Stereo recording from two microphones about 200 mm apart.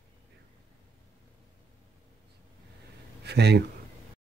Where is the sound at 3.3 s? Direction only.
55° right (ahead or behind).